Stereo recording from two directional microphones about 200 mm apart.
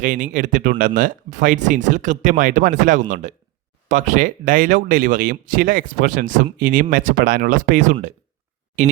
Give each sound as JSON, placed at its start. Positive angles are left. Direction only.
{"t": 0.0, "sound": "speech", "side_deg": -40}